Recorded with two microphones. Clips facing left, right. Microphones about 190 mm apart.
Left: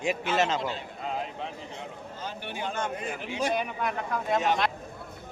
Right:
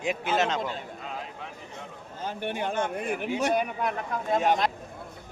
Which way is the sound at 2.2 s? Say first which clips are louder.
Right 5 dB; 55° right (ahead or behind).